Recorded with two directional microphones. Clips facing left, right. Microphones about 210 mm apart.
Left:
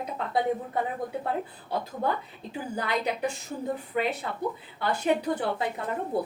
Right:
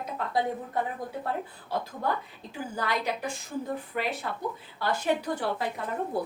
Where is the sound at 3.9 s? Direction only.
20° left (ahead or behind).